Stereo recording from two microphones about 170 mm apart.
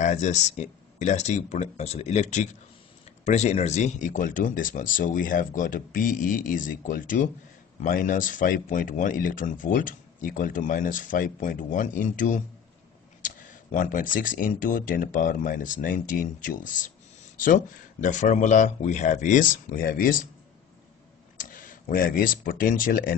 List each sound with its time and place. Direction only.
0.0 s speech: 45° left (ahead or behind)
18.0 s speech: 45° left (ahead or behind)
21.4 s speech: 50° left (ahead or behind)